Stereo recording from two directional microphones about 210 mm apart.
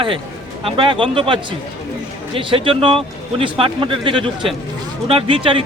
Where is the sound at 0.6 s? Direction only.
25° right (ahead or behind).